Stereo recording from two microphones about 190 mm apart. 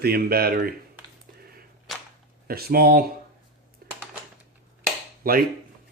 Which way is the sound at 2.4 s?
50° right (ahead or behind).